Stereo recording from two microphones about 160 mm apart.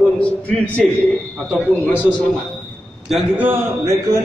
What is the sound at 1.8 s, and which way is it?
Speech, 10° left (ahead or behind).